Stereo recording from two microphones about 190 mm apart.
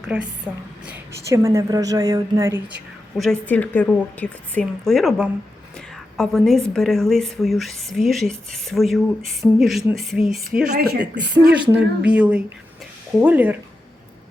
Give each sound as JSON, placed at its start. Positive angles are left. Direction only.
{"t": 0.0, "sound": "a woman's voice", "side_deg": -5}
{"t": 3.2, "sound": "a woman's voice", "side_deg": 5}
{"t": 10.8, "sound": "speech", "side_deg": -60}
{"t": 12.0, "sound": "a woman's voice", "side_deg": -5}